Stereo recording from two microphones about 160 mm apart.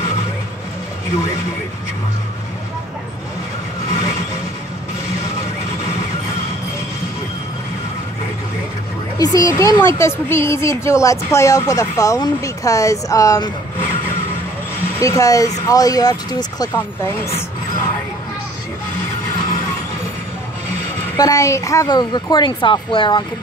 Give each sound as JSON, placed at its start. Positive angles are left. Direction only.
{"t": 9.2, "sound": "a woman's voice", "side_deg": 20}
{"t": 15.0, "sound": "a woman's voice", "side_deg": 20}
{"t": 21.2, "sound": "a woman's voice", "side_deg": 20}